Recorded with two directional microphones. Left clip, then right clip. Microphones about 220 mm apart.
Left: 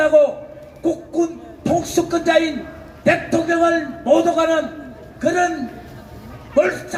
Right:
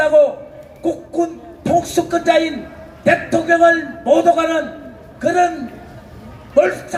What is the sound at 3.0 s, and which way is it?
A man's voice, 20° right (ahead or behind).